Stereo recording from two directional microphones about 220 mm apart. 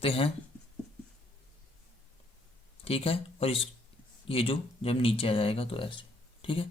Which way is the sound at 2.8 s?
25° left (ahead or behind).